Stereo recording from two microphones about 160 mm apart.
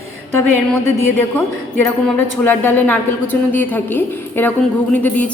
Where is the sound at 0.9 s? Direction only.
15° left (ahead or behind).